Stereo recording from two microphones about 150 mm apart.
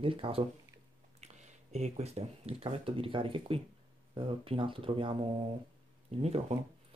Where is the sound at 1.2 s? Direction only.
50° right (ahead or behind).